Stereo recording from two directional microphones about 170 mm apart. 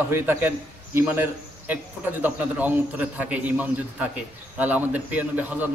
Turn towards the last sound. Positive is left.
turn(degrees=-10)  # may be behind; listen again after turning